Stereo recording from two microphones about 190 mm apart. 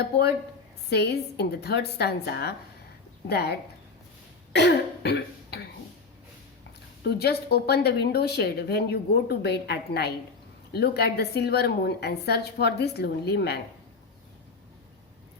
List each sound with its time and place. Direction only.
0.9 s a woman's voice: 60° left (ahead or behind)
4.5 s throat clearing: 60° left (ahead or behind)
7.0 s a woman's voice: 60° left (ahead or behind)